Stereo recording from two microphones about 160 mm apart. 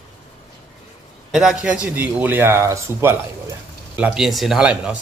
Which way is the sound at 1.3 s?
Centre (ahead or behind).